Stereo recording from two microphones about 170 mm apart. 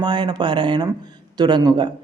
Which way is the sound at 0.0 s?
25° right (ahead or behind).